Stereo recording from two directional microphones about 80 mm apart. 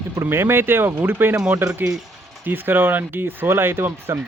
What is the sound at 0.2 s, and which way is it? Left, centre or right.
Speech, right.